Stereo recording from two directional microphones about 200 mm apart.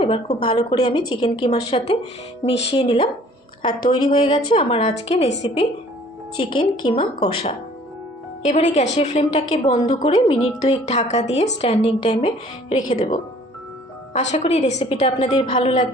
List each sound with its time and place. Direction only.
0.0 s a woman's voice: 25° left (ahead or behind)
6.3 s a woman's voice: 25° left (ahead or behind)
14.1 s a woman's voice: 35° left (ahead or behind)